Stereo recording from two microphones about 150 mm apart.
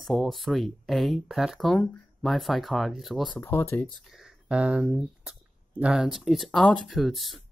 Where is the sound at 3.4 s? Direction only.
15° left (ahead or behind).